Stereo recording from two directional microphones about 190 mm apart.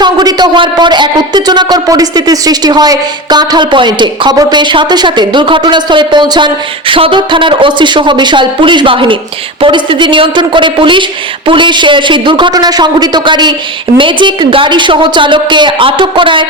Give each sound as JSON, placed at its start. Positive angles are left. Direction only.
{"t": 0.0, "sound": "speech", "side_deg": -20}